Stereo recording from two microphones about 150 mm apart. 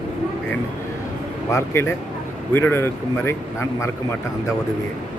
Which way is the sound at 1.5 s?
15° left (ahead or behind).